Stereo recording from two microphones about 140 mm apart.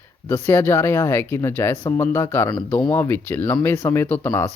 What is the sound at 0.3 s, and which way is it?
Speech, 15° left (ahead or behind).